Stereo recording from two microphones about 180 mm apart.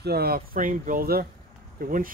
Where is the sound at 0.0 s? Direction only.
60° right (ahead or behind).